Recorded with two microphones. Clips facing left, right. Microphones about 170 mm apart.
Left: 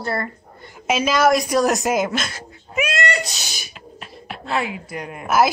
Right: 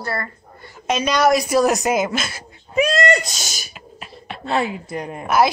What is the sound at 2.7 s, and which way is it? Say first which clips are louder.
Speech: right 5 dB; 35° right (ahead or behind).